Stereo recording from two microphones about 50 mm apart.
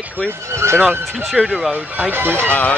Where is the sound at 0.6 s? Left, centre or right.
Right.